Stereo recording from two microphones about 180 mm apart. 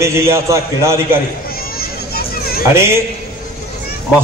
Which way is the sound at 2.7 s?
15° right (ahead or behind).